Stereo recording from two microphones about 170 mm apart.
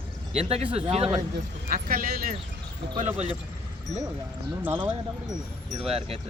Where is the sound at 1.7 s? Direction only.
55° right (ahead or behind).